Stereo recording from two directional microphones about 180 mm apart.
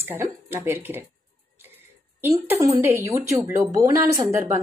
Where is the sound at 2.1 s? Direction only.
15° right (ahead or behind).